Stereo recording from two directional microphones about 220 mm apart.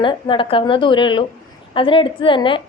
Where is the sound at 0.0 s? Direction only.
20° left (ahead or behind).